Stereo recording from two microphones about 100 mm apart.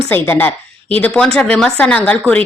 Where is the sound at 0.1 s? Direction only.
20° left (ahead or behind).